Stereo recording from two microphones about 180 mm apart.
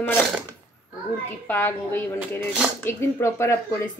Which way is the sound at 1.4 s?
10° left (ahead or behind).